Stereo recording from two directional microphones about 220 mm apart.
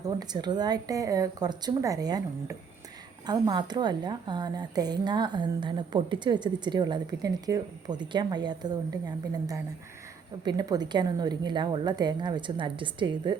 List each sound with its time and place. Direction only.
0.0 s a woman's voice: 20° right (ahead or behind)